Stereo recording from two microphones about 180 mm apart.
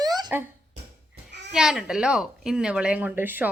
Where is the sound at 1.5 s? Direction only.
5° right (ahead or behind).